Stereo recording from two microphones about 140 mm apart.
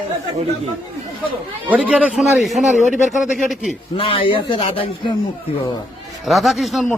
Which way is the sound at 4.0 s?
40° left (ahead or behind).